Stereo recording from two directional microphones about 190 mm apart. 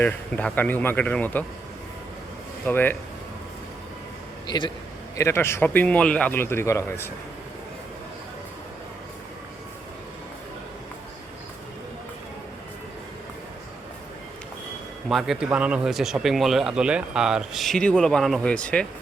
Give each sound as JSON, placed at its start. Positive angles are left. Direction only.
{"t": 0.0, "sound": "a man's voice", "side_deg": 10}
{"t": 2.6, "sound": "a man's voice", "side_deg": 10}
{"t": 4.4, "sound": "a man's voice", "side_deg": 25}
{"t": 15.1, "sound": "speech", "side_deg": -5}